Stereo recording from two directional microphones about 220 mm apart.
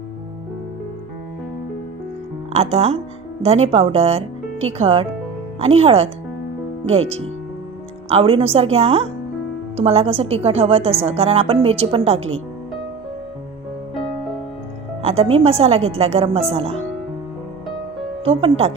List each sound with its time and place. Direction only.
2.5 s a woman's voice: 30° right (ahead or behind)
15.0 s a woman's voice: 25° right (ahead or behind)
18.3 s a woman's voice: 25° right (ahead or behind)